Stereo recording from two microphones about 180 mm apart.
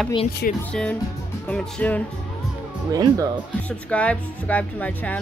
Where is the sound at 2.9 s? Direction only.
20° right (ahead or behind).